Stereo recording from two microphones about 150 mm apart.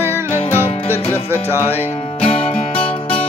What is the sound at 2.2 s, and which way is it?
Music, 40° left (ahead or behind).